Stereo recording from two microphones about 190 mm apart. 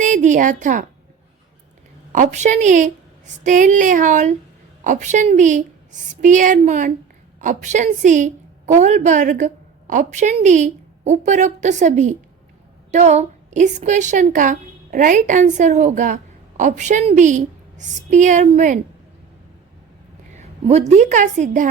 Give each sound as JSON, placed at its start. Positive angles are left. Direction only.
{"t": 0.0, "sound": "a woman's voice", "side_deg": -40}
{"t": 2.1, "sound": "a woman's voice", "side_deg": -40}
{"t": 20.3, "sound": "a woman's voice", "side_deg": -35}